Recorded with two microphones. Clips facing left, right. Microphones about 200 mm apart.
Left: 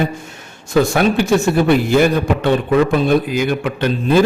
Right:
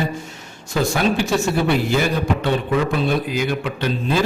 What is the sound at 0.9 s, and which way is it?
A man's voice, 55° left (ahead or behind).